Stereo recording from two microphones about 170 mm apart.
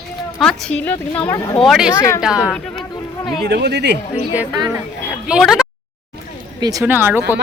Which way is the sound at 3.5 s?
75° right (ahead or behind).